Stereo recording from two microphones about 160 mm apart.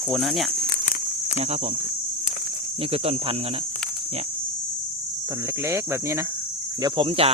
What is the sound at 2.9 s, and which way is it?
Speech, 40° right (ahead or behind).